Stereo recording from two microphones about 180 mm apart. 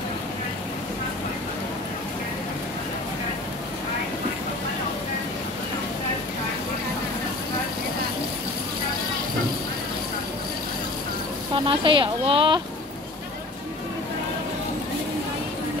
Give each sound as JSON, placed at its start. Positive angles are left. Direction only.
{"t": 11.5, "sound": "a woman's voice", "side_deg": -30}